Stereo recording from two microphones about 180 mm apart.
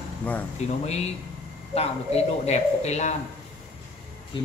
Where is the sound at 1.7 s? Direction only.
35° left (ahead or behind).